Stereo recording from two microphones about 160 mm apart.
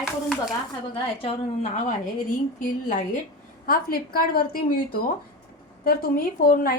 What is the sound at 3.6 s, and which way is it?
A woman's voice, 65° left (ahead or behind).